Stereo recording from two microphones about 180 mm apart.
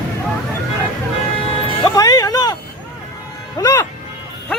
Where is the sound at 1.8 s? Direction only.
20° left (ahead or behind).